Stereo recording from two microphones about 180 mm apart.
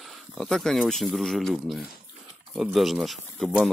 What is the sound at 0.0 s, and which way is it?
Speech, centre (ahead or behind).